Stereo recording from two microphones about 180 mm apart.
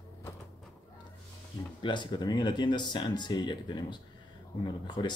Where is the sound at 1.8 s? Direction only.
25° left (ahead or behind).